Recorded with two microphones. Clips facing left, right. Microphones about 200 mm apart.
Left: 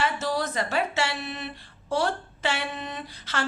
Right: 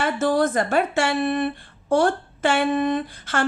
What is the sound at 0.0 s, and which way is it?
Speech, 50° right (ahead or behind).